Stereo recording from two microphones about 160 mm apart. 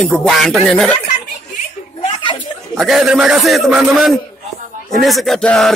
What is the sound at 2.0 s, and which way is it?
Chuckle, 30° left (ahead or behind).